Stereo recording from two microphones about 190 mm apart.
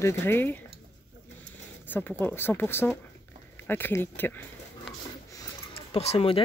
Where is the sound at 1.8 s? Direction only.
10° left (ahead or behind).